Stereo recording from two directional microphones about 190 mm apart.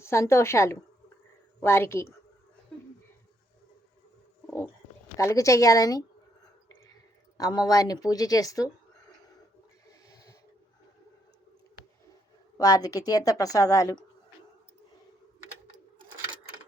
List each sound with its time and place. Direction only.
0.0 s a woman's voice: 15° left (ahead or behind)
4.4 s a sound: 10° left (ahead or behind)
5.1 s a woman's voice: 15° left (ahead or behind)
7.3 s a woman's voice: 20° left (ahead or behind)
10.1 s a sound: 20° left (ahead or behind)
12.5 s a woman's voice: 20° left (ahead or behind)